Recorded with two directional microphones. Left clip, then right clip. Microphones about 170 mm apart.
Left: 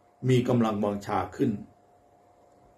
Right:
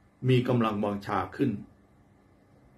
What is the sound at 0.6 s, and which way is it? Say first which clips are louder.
Speech: left 1 dB; centre (ahead or behind).